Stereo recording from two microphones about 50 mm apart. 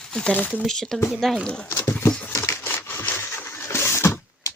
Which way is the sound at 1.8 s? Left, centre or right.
Left.